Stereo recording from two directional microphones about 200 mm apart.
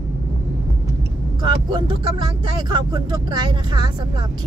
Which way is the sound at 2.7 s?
20° right (ahead or behind).